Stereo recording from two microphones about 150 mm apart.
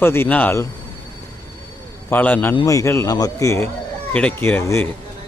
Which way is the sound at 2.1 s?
15° left (ahead or behind).